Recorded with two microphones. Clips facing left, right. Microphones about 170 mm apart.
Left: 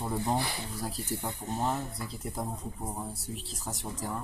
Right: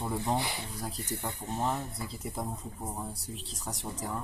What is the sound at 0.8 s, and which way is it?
Speech, 5° left (ahead or behind).